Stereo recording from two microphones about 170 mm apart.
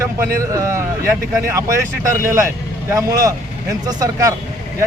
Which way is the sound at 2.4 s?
20° right (ahead or behind).